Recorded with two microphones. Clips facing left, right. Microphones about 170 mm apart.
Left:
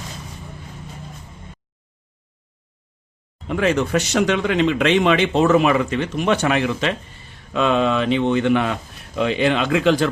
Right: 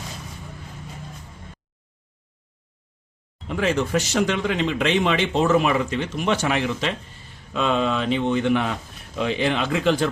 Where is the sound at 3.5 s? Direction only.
65° left (ahead or behind).